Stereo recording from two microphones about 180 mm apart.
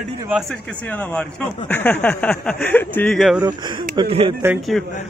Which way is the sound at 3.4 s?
25° right (ahead or behind).